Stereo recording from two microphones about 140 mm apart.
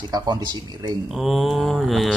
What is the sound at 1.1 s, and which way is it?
Mantra, centre (ahead or behind).